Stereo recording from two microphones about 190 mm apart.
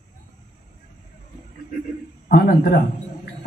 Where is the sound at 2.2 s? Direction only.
55° left (ahead or behind).